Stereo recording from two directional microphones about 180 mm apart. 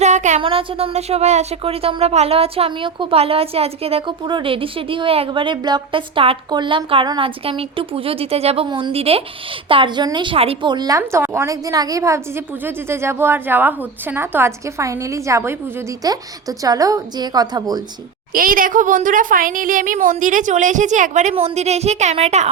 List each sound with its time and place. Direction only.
0.0 s a sound: 40° right (ahead or behind)
0.4 s a woman's voice: 30° right (ahead or behind)
18.3 s speech: 50° right (ahead or behind)